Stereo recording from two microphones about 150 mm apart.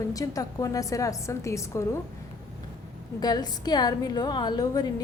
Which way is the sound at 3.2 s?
25° left (ahead or behind).